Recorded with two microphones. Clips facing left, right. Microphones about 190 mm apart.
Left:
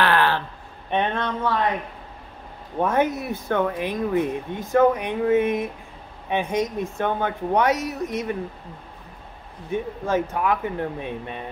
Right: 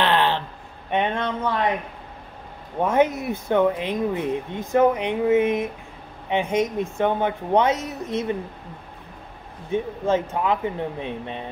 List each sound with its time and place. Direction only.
0.0 s a sound: 20° right (ahead or behind)
2.8 s speech: 20° right (ahead or behind)
9.7 s speech: 20° right (ahead or behind)